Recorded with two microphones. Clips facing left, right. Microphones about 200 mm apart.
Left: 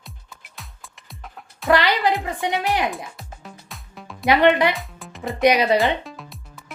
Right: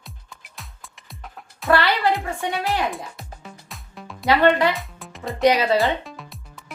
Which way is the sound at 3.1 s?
Centre (ahead or behind).